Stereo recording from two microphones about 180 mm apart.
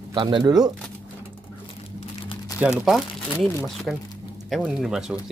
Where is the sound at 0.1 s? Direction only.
25° right (ahead or behind).